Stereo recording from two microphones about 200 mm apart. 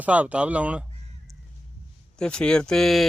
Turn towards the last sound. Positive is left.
turn(degrees=0)  # may be behind; listen again after turning